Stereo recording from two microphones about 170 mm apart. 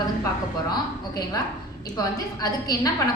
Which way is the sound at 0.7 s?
20° left (ahead or behind).